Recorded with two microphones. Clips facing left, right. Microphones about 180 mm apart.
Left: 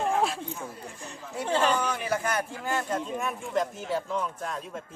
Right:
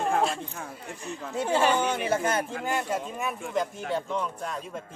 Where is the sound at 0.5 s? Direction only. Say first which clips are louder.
Even; 65° right (ahead or behind).